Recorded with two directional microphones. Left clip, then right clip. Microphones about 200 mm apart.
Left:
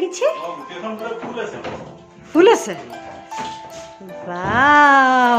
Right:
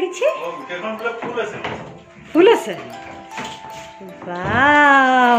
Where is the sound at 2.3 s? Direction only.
10° left (ahead or behind).